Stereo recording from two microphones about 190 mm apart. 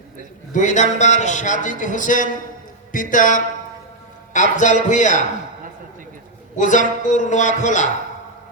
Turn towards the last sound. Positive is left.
turn(degrees=40)  # may be behind; listen again after turning